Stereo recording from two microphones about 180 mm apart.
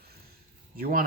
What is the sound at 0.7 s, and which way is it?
Speech, 55° right (ahead or behind).